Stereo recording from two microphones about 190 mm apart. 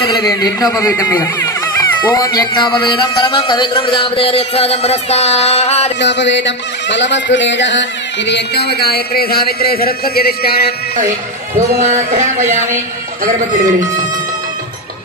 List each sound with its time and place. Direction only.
0.2 s speech: 20° left (ahead or behind); by 5.9 s 35° left (ahead or behind)
5.9 s music: 65° left (ahead or behind)
11.5 s speech: 40° right (ahead or behind)